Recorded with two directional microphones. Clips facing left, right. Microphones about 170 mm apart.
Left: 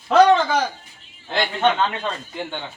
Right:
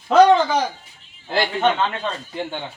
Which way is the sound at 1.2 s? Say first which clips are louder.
Right 1 dB; 10° right (ahead or behind).